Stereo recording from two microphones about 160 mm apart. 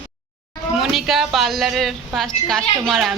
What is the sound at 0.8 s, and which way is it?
A woman's voice, centre (ahead or behind).